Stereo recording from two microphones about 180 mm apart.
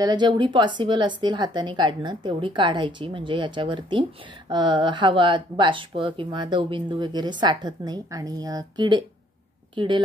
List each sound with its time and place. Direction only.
0.0 s speech: 25° right (ahead or behind)